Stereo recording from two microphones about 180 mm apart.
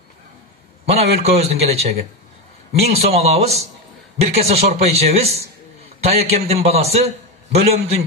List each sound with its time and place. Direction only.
0.9 s speech: 35° right (ahead or behind)